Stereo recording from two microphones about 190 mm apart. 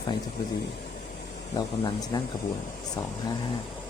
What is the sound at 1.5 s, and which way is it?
Speech, 20° left (ahead or behind).